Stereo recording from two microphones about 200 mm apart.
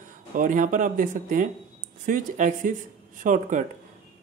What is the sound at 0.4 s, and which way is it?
Speech, 40° right (ahead or behind).